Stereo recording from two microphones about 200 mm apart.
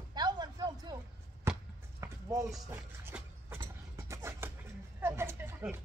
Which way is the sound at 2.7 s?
10° right (ahead or behind).